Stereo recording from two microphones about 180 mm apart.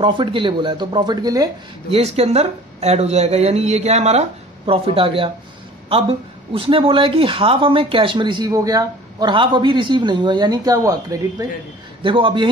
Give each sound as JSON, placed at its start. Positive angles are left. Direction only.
{"t": 0.0, "sound": "speech", "side_deg": -25}
{"t": 1.9, "sound": "speech", "side_deg": -35}